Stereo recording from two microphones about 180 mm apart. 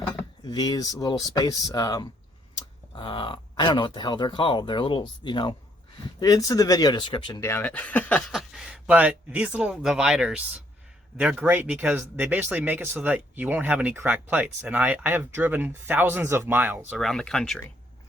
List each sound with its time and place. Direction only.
0.4 s speech: 20° left (ahead or behind)
7.4 s speech: 10° left (ahead or behind); by 16.8 s 10° right (ahead or behind)
16.9 s speech: 5° left (ahead or behind)